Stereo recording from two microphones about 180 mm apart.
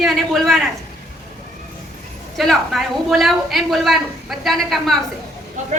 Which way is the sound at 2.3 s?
Centre (ahead or behind).